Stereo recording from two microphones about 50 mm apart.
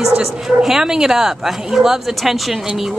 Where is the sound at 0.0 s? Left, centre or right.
Centre.